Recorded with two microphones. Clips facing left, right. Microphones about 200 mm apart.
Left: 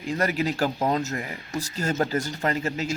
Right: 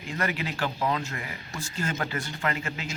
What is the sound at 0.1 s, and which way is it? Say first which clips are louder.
Speech: left 6 dB; 40° left (ahead or behind).